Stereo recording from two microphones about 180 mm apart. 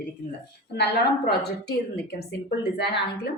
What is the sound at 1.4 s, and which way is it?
A woman's voice, 65° left (ahead or behind).